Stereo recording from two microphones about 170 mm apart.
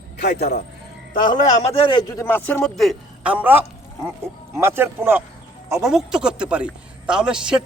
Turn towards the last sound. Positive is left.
turn(degrees=-5)  # may be behind; listen again after turning